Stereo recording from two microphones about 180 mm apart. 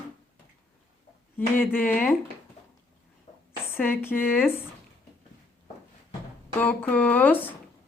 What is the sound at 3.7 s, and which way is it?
Speech, 10° left (ahead or behind).